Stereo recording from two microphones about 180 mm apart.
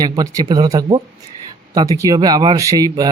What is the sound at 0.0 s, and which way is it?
Speech, 20° right (ahead or behind).